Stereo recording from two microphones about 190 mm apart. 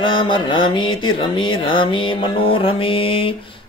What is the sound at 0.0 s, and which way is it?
Speech, 25° left (ahead or behind).